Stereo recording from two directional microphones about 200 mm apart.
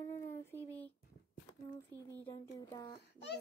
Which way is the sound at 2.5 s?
20° left (ahead or behind).